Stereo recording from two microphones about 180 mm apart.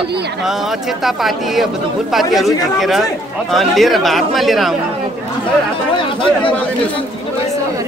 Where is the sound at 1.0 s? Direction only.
Centre (ahead or behind).